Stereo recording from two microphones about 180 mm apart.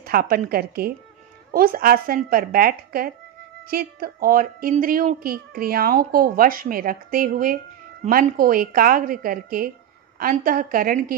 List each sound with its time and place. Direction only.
0.0 s speech: 55° right (ahead or behind)